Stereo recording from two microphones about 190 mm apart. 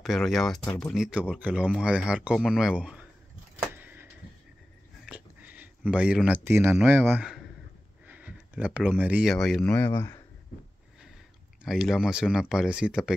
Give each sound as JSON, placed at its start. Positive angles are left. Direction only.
{"t": 0.0, "sound": "speech", "side_deg": 0}
{"t": 3.5, "sound": "vehicle", "side_deg": -10}
{"t": 5.0, "sound": "speech", "side_deg": -5}
{"t": 11.6, "sound": "speech", "side_deg": 0}